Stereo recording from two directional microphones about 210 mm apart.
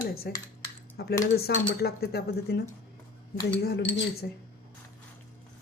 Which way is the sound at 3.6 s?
50° left (ahead or behind).